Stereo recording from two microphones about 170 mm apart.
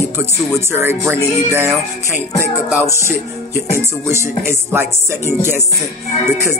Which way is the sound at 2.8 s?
15° left (ahead or behind).